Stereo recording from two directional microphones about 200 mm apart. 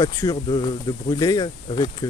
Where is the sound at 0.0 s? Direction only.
20° left (ahead or behind).